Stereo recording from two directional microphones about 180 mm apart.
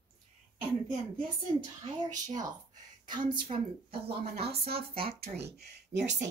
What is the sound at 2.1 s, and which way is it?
A woman's voice, 20° right (ahead or behind).